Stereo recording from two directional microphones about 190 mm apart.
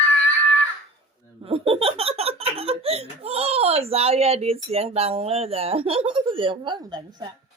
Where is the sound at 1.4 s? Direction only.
30° right (ahead or behind).